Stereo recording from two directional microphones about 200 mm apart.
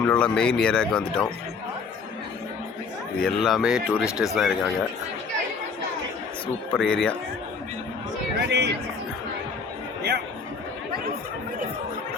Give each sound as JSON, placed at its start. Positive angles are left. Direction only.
{"t": 0.0, "sound": "speech", "side_deg": 5}
{"t": 3.2, "sound": "speech", "side_deg": 0}
{"t": 6.7, "sound": "speech", "side_deg": 5}
{"t": 8.4, "sound": "speech", "side_deg": -60}